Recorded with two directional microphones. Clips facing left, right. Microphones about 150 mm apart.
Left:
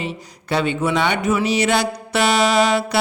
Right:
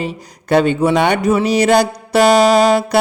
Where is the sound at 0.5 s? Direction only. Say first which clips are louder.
Right 7 dB; 45° right (ahead or behind).